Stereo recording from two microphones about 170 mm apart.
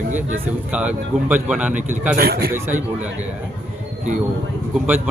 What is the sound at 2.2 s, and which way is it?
Speech, 65° right (ahead or behind).